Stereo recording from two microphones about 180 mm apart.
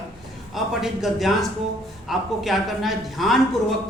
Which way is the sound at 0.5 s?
Centre (ahead or behind).